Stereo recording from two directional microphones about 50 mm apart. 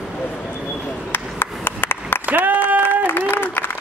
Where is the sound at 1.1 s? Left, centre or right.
Left.